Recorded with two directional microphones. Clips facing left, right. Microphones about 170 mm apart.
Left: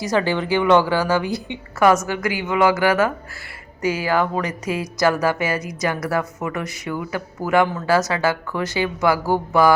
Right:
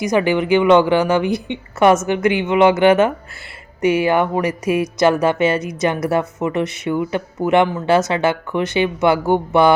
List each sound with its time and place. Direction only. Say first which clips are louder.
0.0 s a woman's voice: right 4 dB; 15° right (ahead or behind)